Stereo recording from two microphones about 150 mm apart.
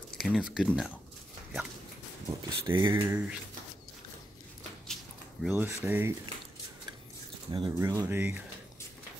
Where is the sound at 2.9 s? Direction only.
15° right (ahead or behind).